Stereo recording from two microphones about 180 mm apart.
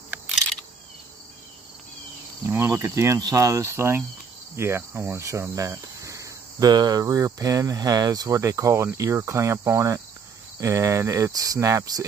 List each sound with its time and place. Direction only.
2.4 s cricket: 15° right (ahead or behind)